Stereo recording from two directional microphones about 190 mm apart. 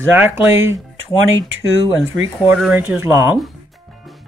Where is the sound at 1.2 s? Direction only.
90° right.